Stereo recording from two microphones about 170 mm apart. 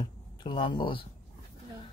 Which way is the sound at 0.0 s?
25° left (ahead or behind).